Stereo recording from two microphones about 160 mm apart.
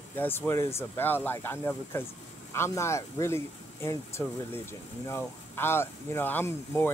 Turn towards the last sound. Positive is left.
turn(degrees=15)  # may be behind; listen again after turning